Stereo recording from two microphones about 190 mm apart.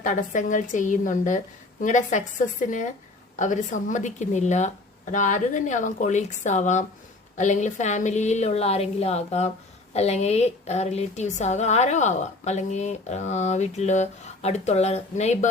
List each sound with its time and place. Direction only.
0.0 s speech: 40° left (ahead or behind)